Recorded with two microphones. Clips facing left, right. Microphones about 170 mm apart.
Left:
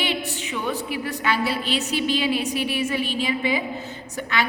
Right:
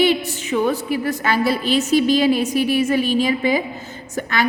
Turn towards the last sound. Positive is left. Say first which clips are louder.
# right 4 dB
turn(degrees=-45)  # may be behind; listen again after turning